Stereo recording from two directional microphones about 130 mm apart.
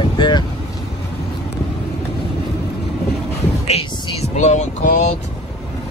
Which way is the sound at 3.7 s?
50° left (ahead or behind).